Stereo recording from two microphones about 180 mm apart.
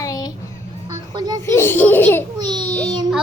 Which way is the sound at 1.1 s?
20° right (ahead or behind).